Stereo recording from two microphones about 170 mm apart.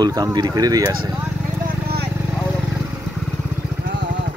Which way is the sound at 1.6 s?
70° right (ahead or behind).